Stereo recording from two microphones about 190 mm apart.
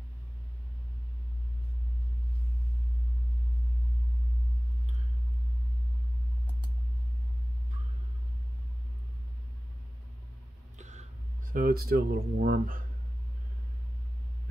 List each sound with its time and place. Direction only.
10.8 s speech: 40° right (ahead or behind)